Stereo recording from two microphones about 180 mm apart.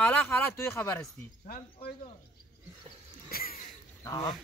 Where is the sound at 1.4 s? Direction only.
55° left (ahead or behind).